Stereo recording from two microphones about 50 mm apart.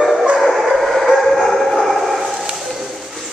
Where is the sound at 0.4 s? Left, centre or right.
Centre.